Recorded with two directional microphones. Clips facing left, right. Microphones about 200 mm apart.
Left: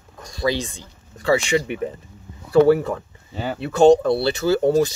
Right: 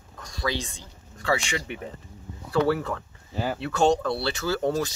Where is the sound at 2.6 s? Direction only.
15° left (ahead or behind).